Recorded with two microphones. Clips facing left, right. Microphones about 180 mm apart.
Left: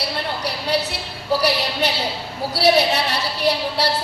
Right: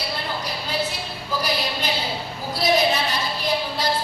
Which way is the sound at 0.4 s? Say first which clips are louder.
Left 7 dB; 70° left (ahead or behind).